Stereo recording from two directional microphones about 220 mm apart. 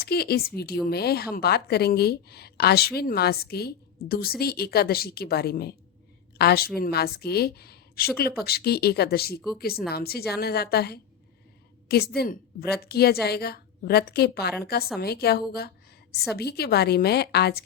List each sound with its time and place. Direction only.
0.0 s a woman's voice: 45° left (ahead or behind)